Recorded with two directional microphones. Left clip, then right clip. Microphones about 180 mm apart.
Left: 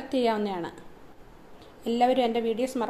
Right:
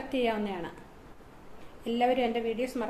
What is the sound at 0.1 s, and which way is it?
Speech, 35° left (ahead or behind).